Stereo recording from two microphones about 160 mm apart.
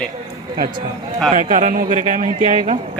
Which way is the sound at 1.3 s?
50° right (ahead or behind).